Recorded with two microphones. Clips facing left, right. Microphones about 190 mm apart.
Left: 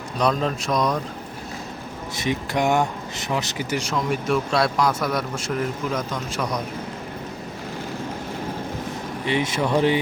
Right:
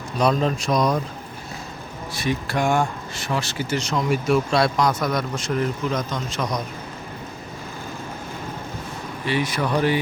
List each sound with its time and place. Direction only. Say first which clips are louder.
0.2 s speech: right 2 dB; centre (ahead or behind)
2.1 s speech: even; 20° left (ahead or behind)
3.9 s speech: right 3 dB; centre (ahead or behind)
9.2 s speech: even; 20° left (ahead or behind)